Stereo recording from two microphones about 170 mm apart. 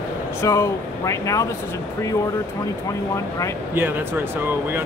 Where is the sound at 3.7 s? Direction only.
10° right (ahead or behind).